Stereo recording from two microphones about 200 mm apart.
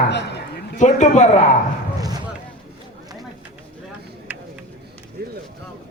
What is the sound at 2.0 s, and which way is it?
Basketball bounce, 20° right (ahead or behind).